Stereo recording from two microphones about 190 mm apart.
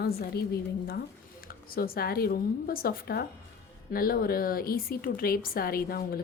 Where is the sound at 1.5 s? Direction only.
50° left (ahead or behind).